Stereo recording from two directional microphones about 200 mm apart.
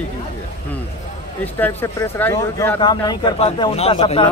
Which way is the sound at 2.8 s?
20° left (ahead or behind).